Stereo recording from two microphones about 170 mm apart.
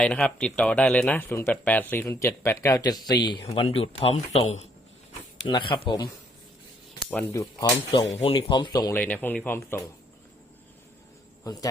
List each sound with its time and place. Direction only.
0.0 s a man's voice: 5° left (ahead or behind); by 4.7 s 40° left (ahead or behind)
5.5 s speech: 30° left (ahead or behind)
7.3 s speech: 20° left (ahead or behind)
8.1 s speech: 35° left (ahead or behind)
9.0 s speech: 10° left (ahead or behind)